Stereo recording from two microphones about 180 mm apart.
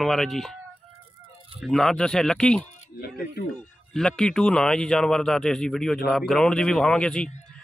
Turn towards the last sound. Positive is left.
turn(degrees=5)  # may be behind; listen again after turning